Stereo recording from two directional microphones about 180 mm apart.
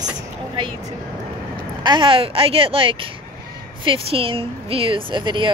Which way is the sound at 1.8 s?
25° right (ahead or behind).